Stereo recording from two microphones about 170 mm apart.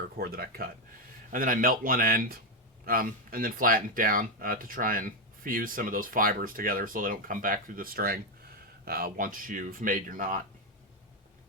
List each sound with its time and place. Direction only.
0.2 s speech: 60° right (ahead or behind)